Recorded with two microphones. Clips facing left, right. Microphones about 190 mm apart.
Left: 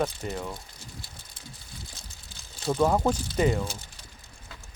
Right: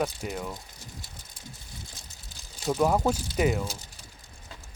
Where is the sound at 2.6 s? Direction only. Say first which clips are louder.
Left 1 dB; 5° right (ahead or behind).